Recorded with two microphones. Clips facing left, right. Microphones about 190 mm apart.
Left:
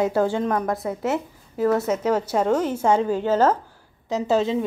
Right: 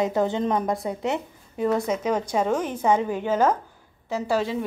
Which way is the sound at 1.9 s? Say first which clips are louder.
Left 3 dB; 10° right (ahead or behind).